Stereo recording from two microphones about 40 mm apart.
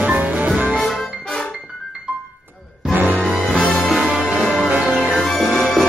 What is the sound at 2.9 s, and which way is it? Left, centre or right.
Music, right.